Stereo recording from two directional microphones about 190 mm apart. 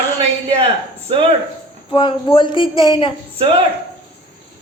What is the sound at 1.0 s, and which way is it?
Speech, 30° right (ahead or behind).